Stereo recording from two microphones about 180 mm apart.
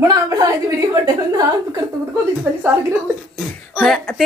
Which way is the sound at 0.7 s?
20° right (ahead or behind).